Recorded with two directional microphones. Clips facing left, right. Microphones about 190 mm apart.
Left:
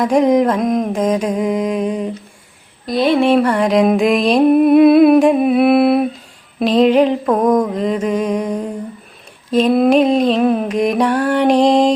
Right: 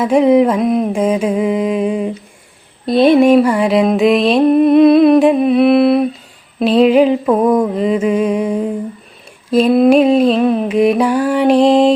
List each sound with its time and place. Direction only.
0.0 s music: 5° right (ahead or behind)
2.8 s a sound: 25° right (ahead or behind)
3.2 s music: 10° right (ahead or behind)
6.6 s mantra: 5° right (ahead or behind)
10.4 s music: centre (ahead or behind)